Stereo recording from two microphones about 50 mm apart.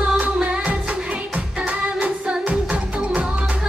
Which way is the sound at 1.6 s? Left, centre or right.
Right.